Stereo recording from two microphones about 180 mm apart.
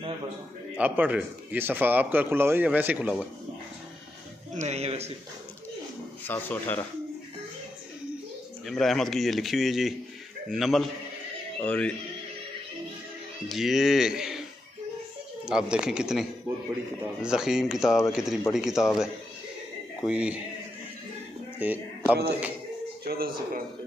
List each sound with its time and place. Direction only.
0.7 s a man's voice: 10° right (ahead or behind)
4.6 s a man's voice: 35° right (ahead or behind)
6.2 s speech: 10° left (ahead or behind)
8.6 s speech: centre (ahead or behind)
13.5 s speech: centre (ahead or behind)
15.4 s speech: 5° right (ahead or behind)
20.1 s a man's voice: 5° right (ahead or behind)
21.5 s speech: 10° right (ahead or behind)
23.0 s speech: 55° right (ahead or behind)